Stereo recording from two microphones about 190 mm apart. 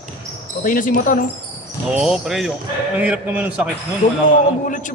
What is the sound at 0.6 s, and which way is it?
Speech, 45° left (ahead or behind).